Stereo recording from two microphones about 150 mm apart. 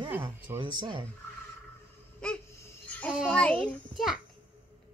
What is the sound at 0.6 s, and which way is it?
Speech, 30° right (ahead or behind).